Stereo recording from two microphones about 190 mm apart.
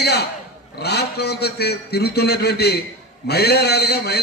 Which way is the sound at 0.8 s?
60° left (ahead or behind).